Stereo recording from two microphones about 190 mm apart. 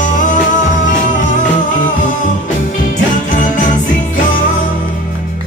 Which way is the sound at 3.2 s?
40° left (ahead or behind).